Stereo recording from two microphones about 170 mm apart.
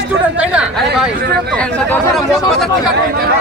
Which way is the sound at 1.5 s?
5° left (ahead or behind).